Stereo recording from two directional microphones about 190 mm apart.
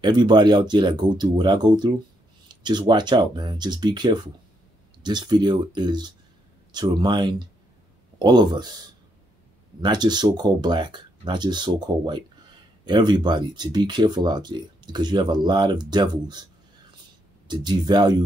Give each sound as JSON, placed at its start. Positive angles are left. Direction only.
{"t": 0.0, "sound": "speech", "side_deg": -25}
{"t": 9.8, "sound": "speech", "side_deg": -20}
{"t": 17.5, "sound": "speech", "side_deg": -20}